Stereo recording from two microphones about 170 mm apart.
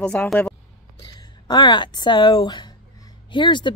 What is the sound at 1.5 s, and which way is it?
A woman's voice, 25° left (ahead or behind).